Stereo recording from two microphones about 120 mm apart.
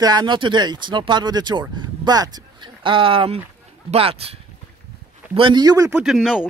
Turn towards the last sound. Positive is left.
turn(degrees=-5)  # may be behind; listen again after turning